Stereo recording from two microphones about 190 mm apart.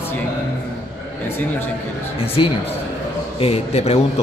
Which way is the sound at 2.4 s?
25° left (ahead or behind).